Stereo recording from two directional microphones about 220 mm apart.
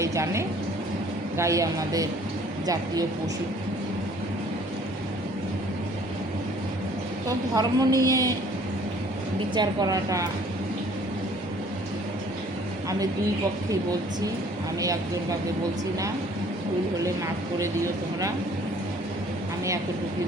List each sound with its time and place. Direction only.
0.0 s a woman's voice: 15° right (ahead or behind)
7.3 s a woman's voice: 15° right (ahead or behind)
9.6 s a woman's voice: 15° right (ahead or behind)
14.8 s a woman's voice: 15° right (ahead or behind)